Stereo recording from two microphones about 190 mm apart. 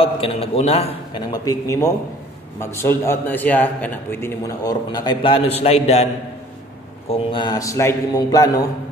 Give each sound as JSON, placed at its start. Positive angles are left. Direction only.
{"t": 0.0, "sound": "a man's voice", "side_deg": 30}
{"t": 1.3, "sound": "a man's voice", "side_deg": 20}
{"t": 7.1, "sound": "a man's voice", "side_deg": 25}